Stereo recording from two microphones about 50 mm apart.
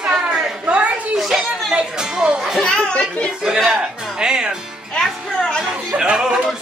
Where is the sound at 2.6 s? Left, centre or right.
Centre.